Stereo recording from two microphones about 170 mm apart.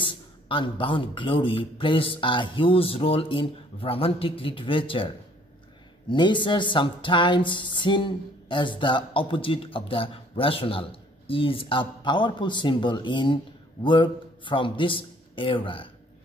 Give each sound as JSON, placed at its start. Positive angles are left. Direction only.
{"t": 0.0, "sound": "a man's voice", "side_deg": 30}